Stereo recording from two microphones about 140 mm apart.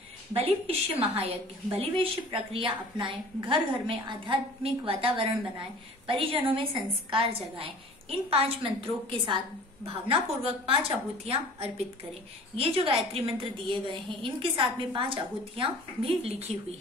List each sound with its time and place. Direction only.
0.3 s a woman's voice: 45° right (ahead or behind)